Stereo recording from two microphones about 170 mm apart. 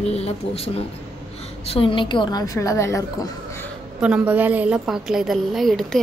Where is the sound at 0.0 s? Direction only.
35° left (ahead or behind).